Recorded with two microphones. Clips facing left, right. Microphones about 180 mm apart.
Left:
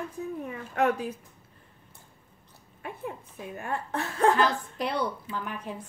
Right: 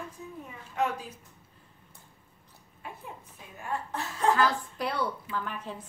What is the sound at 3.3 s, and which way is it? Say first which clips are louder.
A woman's voice: even; 60° left (ahead or behind).